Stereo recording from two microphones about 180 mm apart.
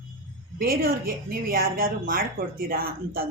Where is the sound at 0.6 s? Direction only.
55° right (ahead or behind).